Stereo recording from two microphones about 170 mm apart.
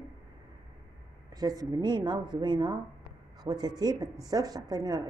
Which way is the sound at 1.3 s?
25° right (ahead or behind).